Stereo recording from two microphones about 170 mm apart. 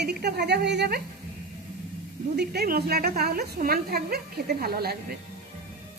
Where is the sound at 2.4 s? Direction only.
65° right (ahead or behind).